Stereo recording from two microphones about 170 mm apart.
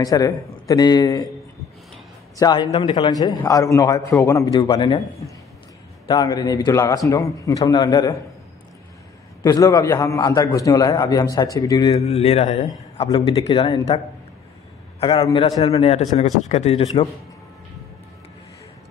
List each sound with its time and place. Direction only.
0.0 s a man's voice: 20° left (ahead or behind)
2.3 s a man's voice: 25° left (ahead or behind)
6.0 s a man's voice: 25° left (ahead or behind)
9.4 s a man's voice: 20° left (ahead or behind)
12.1 s a man's voice: 35° left (ahead or behind)